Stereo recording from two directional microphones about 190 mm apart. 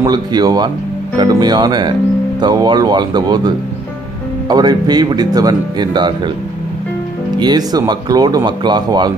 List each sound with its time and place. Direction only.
0.0 s speech: 20° right (ahead or behind)
7.3 s speech: 20° right (ahead or behind)